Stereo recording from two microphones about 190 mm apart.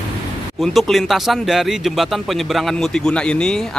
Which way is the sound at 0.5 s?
Centre (ahead or behind).